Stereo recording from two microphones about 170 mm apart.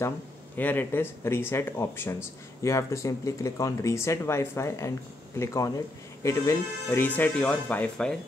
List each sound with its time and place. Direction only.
0.6 s speech: 10° left (ahead or behind)